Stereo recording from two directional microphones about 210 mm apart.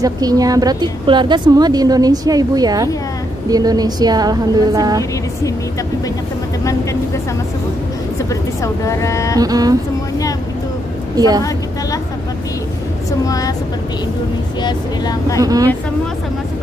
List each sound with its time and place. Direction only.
0.0 s a woman's voice: 15° right (ahead or behind)
6.6 s speech: 15° left (ahead or behind)
8.8 s speech: 15° left (ahead or behind)
9.4 s a woman's voice: 15° right (ahead or behind)
11.1 s a woman's voice: 20° right (ahead or behind)
14.6 s speech: 20° left (ahead or behind)
15.4 s a woman's voice: 15° right (ahead or behind)